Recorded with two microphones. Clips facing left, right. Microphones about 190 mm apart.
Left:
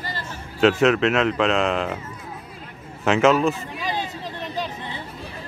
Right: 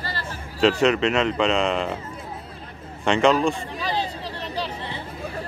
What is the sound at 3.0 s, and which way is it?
Speech, 5° left (ahead or behind).